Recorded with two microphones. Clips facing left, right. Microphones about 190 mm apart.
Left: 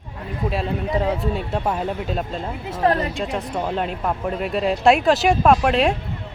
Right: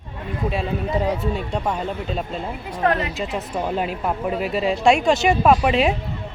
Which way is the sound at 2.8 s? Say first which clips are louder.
Left 1 dB; 35° left (ahead or behind).